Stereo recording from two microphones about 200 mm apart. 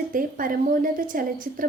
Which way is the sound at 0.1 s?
45° right (ahead or behind).